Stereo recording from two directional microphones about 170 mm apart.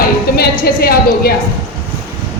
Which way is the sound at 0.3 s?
65° left (ahead or behind).